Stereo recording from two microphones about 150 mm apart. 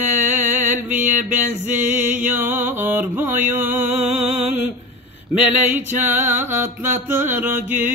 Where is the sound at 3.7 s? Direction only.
50° right (ahead or behind).